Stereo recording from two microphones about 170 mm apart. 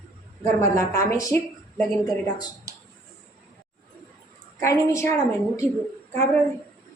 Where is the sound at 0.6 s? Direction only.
20° left (ahead or behind).